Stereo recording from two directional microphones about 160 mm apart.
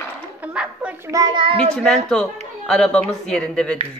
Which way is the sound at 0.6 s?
5° right (ahead or behind).